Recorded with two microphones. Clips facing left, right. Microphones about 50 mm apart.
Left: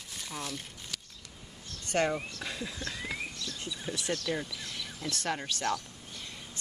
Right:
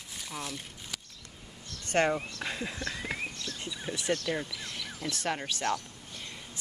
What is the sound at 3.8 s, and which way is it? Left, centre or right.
Speech, right.